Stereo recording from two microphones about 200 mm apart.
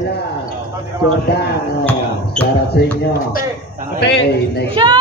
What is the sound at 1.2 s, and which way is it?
Speech, 55° left (ahead or behind).